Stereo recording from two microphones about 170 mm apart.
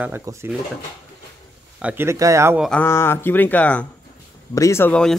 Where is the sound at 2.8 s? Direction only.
15° left (ahead or behind).